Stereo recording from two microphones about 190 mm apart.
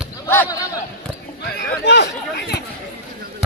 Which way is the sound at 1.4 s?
60° left (ahead or behind).